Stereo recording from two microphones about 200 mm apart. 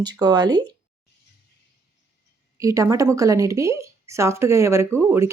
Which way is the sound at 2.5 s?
15° right (ahead or behind).